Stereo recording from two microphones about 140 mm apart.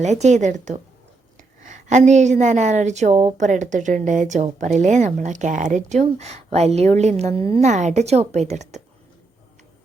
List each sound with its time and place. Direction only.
0.0 s a woman's voice: 55° right (ahead or behind)
7.7 s a woman's voice: 55° right (ahead or behind)